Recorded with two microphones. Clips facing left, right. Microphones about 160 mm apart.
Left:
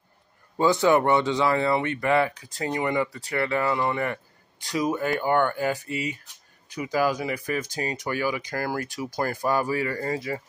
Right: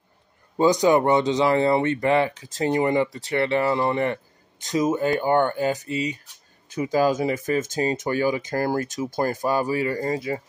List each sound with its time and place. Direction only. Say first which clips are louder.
0.6 s speech: right 2 dB; 15° right (ahead or behind)